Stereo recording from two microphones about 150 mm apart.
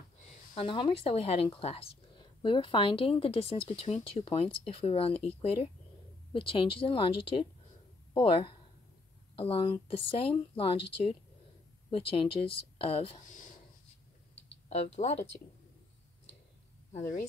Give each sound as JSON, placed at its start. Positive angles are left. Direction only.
{"t": 0.6, "sound": "speech", "side_deg": 35}
{"t": 8.1, "sound": "speech", "side_deg": 35}
{"t": 11.9, "sound": "speech", "side_deg": 35}
{"t": 14.7, "sound": "speech", "side_deg": 45}
{"t": 17.0, "sound": "speech", "side_deg": 75}